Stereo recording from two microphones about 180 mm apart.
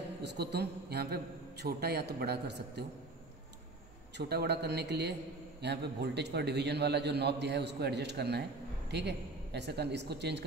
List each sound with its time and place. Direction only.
0.2 s a man's voice: 65° right (ahead or behind)
4.3 s a man's voice: 65° right (ahead or behind)